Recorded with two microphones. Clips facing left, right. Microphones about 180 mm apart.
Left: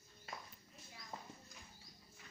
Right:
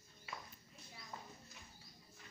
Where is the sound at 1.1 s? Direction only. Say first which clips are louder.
Left 1 dB; 30° left (ahead or behind).